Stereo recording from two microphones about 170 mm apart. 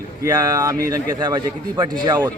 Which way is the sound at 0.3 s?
20° right (ahead or behind).